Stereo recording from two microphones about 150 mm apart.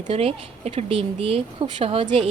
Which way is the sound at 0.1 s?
40° right (ahead or behind).